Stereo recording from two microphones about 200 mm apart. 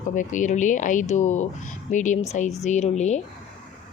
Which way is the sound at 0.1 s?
40° left (ahead or behind).